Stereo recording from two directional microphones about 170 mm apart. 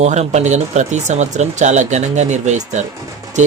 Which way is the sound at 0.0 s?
40° right (ahead or behind).